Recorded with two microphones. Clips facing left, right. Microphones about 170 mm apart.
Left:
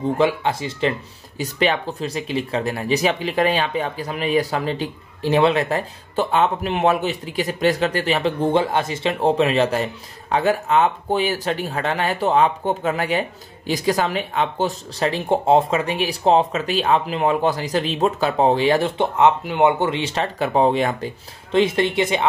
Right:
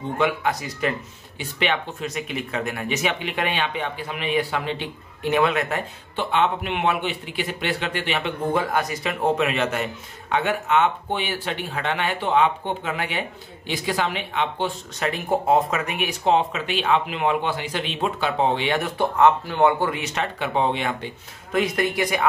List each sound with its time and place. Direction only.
0.2 s speech: 30° left (ahead or behind)
1.4 s speech: 35° left (ahead or behind)
21.5 s speech: 25° left (ahead or behind)